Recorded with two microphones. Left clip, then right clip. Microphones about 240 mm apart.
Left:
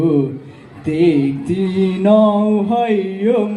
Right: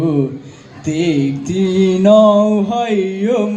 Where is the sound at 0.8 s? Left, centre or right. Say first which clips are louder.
Left 2 dB; right.